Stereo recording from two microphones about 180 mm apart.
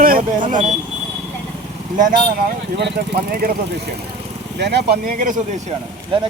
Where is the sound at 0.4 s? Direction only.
45° right (ahead or behind).